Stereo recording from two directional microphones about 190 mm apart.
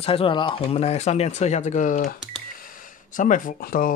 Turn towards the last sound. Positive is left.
turn(degrees=45)  # may be behind; listen again after turning